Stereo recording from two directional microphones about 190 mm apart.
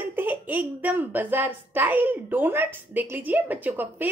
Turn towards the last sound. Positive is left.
turn(degrees=-10)  # may be behind; listen again after turning